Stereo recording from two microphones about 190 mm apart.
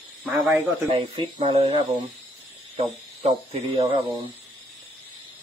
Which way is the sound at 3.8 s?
25° right (ahead or behind).